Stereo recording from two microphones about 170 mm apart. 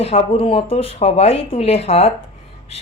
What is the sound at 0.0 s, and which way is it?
Speech, 35° left (ahead or behind).